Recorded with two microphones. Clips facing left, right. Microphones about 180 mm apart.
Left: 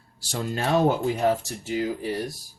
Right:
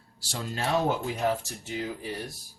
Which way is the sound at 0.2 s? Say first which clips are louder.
Left 5 dB; 50° left (ahead or behind).